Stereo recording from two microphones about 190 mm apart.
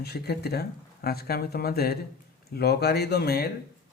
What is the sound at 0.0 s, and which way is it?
A man's voice, 55° left (ahead or behind).